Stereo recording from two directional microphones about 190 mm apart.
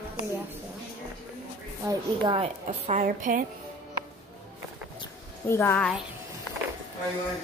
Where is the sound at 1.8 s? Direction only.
25° right (ahead or behind); by 3.4 s 45° right (ahead or behind).